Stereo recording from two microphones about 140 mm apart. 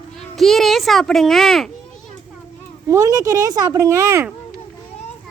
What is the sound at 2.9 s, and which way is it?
Speech, 25° right (ahead or behind).